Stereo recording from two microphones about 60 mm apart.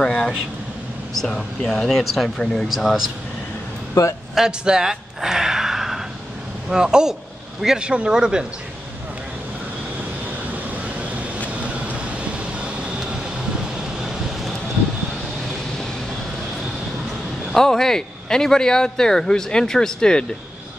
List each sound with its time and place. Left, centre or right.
0.0 s speech: centre
2.7 s speech: centre
4.0 s speech: left
4.4 s speech: centre
10.7 s vehicle: right
17.5 s speech: centre